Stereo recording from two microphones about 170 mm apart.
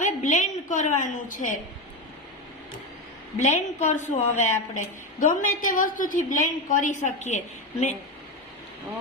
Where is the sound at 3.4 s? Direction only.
45° left (ahead or behind).